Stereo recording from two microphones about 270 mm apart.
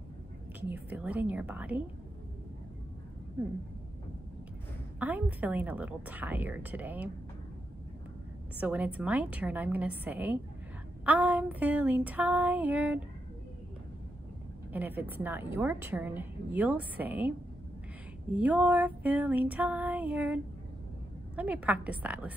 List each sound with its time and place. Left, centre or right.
0.6 s a woman's voice: centre
4.9 s a woman's voice: centre
8.5 s a woman's voice: centre
14.7 s a woman's voice: centre
18.3 s a woman's voice: centre
21.4 s a woman's voice: centre